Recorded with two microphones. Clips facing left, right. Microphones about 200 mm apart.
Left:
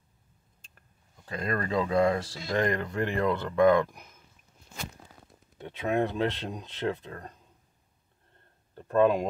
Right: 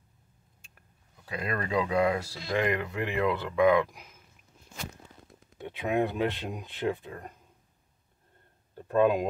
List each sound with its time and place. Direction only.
1.2 s speech: 10° right (ahead or behind)
5.6 s speech: 15° right (ahead or behind)
8.7 s speech: 10° right (ahead or behind)